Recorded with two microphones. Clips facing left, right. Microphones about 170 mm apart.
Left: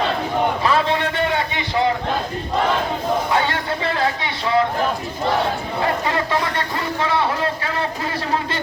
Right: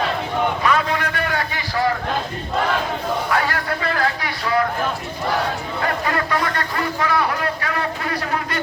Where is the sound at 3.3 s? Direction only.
25° left (ahead or behind).